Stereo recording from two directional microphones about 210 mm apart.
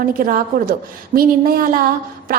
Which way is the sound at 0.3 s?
40° right (ahead or behind).